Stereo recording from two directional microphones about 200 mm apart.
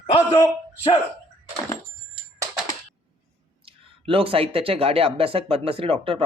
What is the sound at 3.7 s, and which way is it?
Speech, 25° right (ahead or behind).